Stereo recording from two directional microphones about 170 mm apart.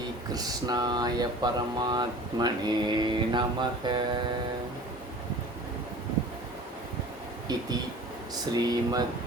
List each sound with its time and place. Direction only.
0.3 s speech: 25° right (ahead or behind)
7.5 s speech: 25° right (ahead or behind)